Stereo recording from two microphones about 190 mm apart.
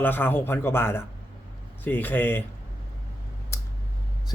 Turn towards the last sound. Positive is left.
turn(degrees=15)  # may be behind; listen again after turning